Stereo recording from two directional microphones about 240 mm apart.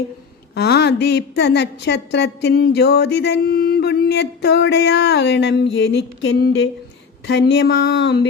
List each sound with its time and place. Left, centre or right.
0.5 s a woman's voice: left